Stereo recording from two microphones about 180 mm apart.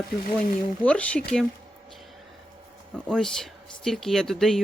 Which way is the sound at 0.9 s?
5° left (ahead or behind).